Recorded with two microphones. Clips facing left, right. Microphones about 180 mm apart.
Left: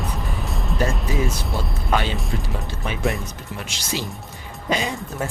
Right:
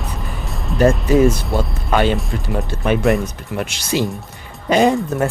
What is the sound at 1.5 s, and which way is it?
Speech, 55° right (ahead or behind).